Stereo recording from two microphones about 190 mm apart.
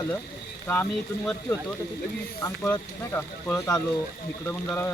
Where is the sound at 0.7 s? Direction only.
10° left (ahead or behind).